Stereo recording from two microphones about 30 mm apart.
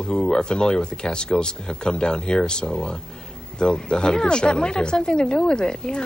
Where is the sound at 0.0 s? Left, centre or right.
Left.